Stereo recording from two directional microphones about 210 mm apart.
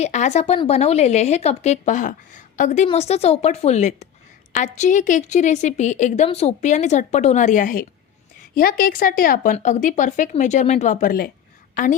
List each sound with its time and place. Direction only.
0.0 s a woman's voice: 35° left (ahead or behind)